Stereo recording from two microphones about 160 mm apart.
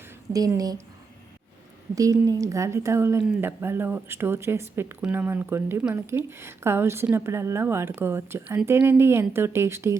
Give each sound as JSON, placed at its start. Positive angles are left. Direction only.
{"t": 0.3, "sound": "speech", "side_deg": -20}
{"t": 2.0, "sound": "a woman's voice", "side_deg": -20}